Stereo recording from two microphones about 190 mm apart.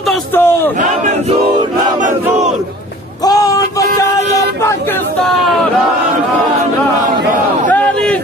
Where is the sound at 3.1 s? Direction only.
20° left (ahead or behind).